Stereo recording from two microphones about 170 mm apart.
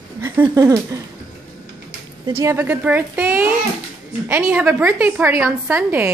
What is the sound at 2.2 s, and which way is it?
A woman's voice, 15° right (ahead or behind).